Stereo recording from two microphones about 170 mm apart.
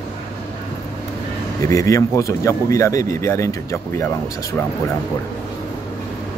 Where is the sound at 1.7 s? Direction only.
20° left (ahead or behind).